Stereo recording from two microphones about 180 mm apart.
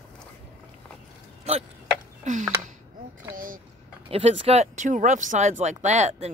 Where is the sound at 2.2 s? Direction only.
45° right (ahead or behind).